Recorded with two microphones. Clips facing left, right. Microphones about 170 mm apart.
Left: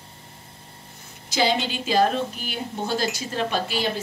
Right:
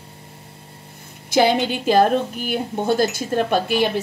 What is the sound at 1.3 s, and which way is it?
A woman's voice, 55° right (ahead or behind).